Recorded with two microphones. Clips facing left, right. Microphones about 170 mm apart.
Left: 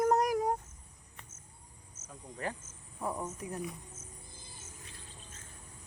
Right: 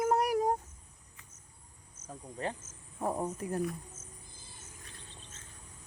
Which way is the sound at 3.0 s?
35° right (ahead or behind).